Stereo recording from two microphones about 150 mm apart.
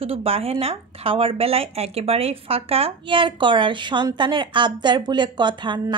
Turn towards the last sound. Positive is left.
turn(degrees=-30)  # may be behind; listen again after turning